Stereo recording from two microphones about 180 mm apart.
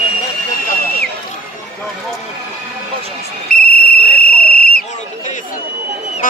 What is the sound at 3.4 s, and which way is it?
Cricket, 55° left (ahead or behind).